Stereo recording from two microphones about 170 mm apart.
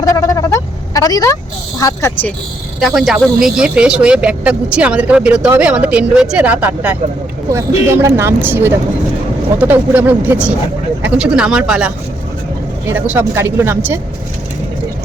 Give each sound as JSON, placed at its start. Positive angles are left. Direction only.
{"t": 0.0, "sound": "vehicle", "side_deg": 20}
{"t": 1.8, "sound": "speech", "side_deg": 15}
{"t": 2.8, "sound": "speech", "side_deg": 0}
{"t": 12.9, "sound": "speech", "side_deg": -10}